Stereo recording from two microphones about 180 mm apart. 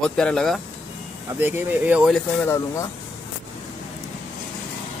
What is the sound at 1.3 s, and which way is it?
Speech, 10° right (ahead or behind).